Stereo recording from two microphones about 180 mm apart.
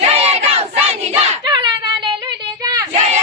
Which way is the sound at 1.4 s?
25° right (ahead or behind).